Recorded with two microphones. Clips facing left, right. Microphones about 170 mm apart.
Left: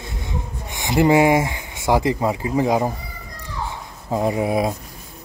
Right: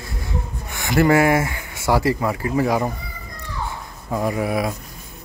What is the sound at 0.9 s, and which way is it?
Speech, 15° left (ahead or behind).